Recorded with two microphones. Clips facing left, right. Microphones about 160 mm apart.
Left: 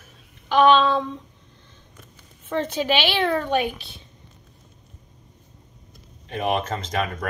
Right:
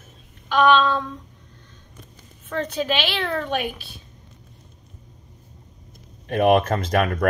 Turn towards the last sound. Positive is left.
turn(degrees=-60)  # may be behind; listen again after turning